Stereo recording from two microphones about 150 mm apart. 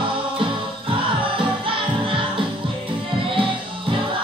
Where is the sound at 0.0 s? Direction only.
35° right (ahead or behind).